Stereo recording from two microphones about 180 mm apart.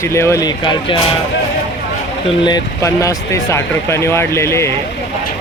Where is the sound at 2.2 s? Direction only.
25° left (ahead or behind).